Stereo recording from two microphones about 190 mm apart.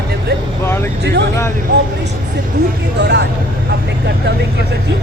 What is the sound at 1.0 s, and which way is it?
Speech, 60° right (ahead or behind).